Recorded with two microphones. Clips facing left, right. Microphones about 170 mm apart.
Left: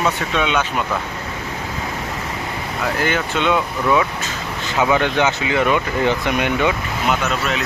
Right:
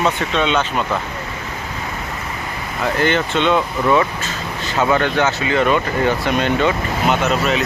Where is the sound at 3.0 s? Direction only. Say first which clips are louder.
Right 4 dB; 5° left (ahead or behind).